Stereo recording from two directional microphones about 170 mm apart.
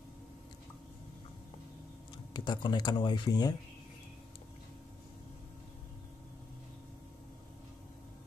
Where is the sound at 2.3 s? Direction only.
25° left (ahead or behind).